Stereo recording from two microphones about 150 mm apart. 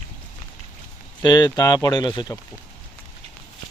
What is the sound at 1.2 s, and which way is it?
Speech, 25° left (ahead or behind).